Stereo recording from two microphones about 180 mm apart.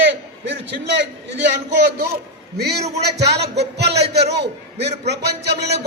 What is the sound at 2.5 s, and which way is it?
A man's voice, 65° right (ahead or behind).